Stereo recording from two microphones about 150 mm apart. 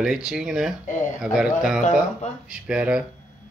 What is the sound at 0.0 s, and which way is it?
Speech, 5° right (ahead or behind).